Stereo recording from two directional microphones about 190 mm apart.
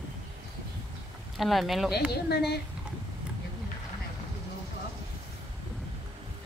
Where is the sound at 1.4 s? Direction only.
Centre (ahead or behind).